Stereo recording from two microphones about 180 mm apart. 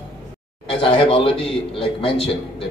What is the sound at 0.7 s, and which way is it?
A man's voice, 30° left (ahead or behind).